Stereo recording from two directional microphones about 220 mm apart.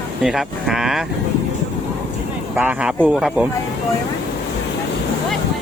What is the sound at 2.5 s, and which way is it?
Speech, 5° right (ahead or behind).